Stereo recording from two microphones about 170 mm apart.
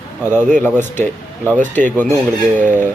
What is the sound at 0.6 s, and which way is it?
Speech, 10° left (ahead or behind).